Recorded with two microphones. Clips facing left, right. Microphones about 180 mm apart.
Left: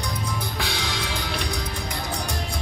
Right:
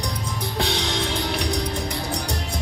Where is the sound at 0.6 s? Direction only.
25° right (ahead or behind).